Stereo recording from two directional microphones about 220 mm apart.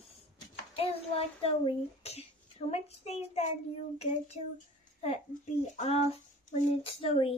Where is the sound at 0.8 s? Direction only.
25° left (ahead or behind).